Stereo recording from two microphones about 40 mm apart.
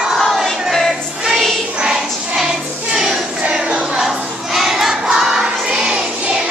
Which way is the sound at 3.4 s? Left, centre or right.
Right.